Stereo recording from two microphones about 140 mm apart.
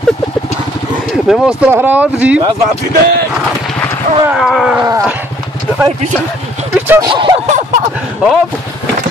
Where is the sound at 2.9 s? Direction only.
90° right.